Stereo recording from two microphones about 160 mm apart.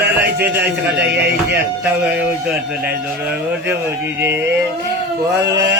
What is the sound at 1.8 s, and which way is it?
Speech, 10° right (ahead or behind).